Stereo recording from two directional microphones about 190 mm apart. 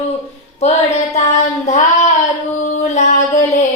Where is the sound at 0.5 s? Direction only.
35° left (ahead or behind).